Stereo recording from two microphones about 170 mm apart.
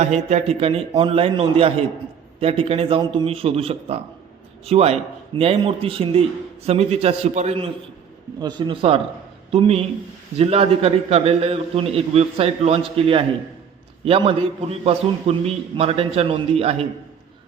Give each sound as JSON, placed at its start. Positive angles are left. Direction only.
{"t": 0.0, "sound": "a man's voice", "side_deg": -40}
{"t": 8.4, "sound": "a man's voice", "side_deg": -25}